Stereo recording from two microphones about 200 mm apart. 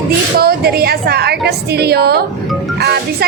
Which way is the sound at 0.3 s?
50° right (ahead or behind).